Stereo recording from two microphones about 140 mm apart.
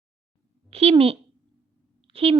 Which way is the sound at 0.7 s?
45° right (ahead or behind).